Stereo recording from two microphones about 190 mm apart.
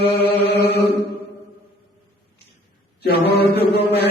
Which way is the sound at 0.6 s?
60° left (ahead or behind).